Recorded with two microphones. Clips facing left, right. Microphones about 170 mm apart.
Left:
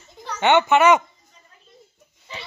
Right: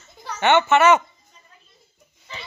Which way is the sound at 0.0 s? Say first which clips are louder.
Left 1 dB; 15° left (ahead or behind).